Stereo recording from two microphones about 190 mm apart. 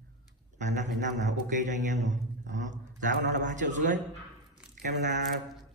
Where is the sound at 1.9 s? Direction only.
40° right (ahead or behind).